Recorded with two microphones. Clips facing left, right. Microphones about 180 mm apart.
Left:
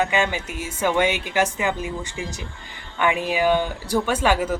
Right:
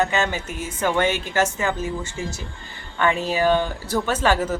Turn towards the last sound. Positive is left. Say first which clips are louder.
# even
turn(degrees=10)  # may be behind; listen again after turning